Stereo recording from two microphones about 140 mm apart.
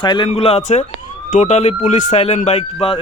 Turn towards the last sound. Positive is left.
turn(degrees=40)  # may be behind; listen again after turning